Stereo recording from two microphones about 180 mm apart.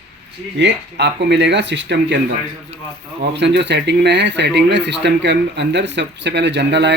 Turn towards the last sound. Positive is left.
turn(degrees=-75)  # may be behind; listen again after turning